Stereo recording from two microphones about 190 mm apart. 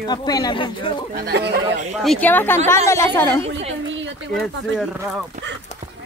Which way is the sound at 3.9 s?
80° right.